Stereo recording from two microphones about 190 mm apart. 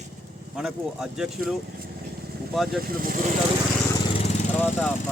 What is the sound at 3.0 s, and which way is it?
Speech, 45° right (ahead or behind).